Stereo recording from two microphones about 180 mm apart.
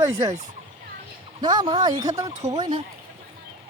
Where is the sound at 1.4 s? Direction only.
25° right (ahead or behind).